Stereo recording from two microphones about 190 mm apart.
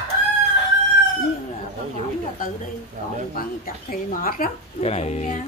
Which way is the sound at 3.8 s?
50° left (ahead or behind).